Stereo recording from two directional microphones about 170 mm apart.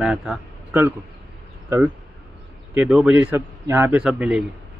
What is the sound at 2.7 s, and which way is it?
A man's voice, 5° right (ahead or behind).